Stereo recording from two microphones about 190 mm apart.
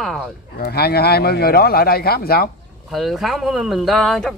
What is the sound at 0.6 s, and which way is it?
A man's voice, 55° left (ahead or behind).